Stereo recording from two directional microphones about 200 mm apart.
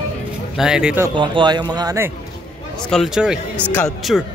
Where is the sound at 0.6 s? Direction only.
5° right (ahead or behind).